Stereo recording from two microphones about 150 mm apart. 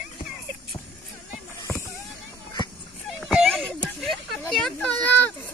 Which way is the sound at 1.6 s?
20° left (ahead or behind).